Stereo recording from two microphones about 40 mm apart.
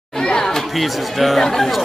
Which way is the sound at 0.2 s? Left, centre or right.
Centre.